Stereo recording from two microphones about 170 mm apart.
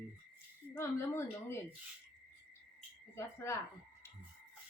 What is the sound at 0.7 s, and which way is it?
Speech, 15° left (ahead or behind).